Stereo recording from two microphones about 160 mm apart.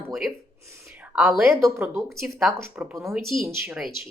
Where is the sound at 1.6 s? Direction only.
20° right (ahead or behind).